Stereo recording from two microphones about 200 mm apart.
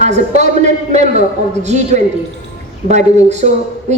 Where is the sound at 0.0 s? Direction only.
35° right (ahead or behind).